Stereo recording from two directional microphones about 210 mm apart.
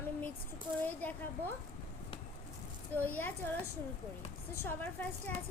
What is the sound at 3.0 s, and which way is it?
Speech, 10° left (ahead or behind).